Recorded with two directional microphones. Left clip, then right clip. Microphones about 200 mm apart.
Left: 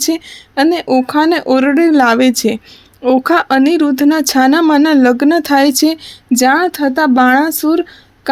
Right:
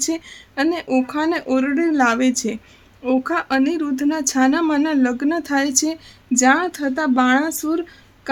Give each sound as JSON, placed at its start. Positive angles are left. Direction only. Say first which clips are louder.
{"t": 0.0, "sound": "speech", "louder": "left 7 dB", "side_deg": 35}